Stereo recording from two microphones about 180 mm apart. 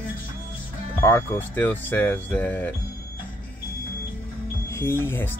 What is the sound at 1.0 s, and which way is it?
Speech, 10° left (ahead or behind).